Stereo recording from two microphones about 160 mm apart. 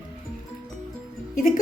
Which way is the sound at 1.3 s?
60° left (ahead or behind).